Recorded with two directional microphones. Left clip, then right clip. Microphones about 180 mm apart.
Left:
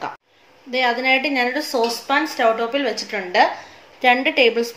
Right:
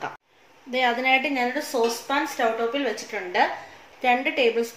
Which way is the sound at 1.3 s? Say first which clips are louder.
Left 5 dB; 30° left (ahead or behind).